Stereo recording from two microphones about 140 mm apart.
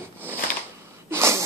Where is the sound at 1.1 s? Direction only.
20° right (ahead or behind).